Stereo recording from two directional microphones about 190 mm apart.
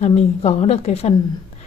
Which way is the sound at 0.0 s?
35° left (ahead or behind).